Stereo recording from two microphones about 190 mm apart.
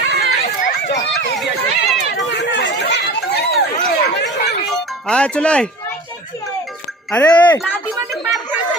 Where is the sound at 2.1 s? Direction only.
65° left (ahead or behind).